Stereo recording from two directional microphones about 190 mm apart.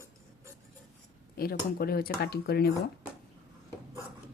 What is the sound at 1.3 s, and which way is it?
Speech, 50° left (ahead or behind).